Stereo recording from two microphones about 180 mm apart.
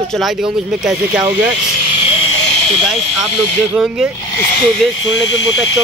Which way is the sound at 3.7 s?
5° right (ahead or behind).